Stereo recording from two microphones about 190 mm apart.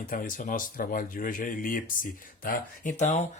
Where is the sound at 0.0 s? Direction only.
45° left (ahead or behind).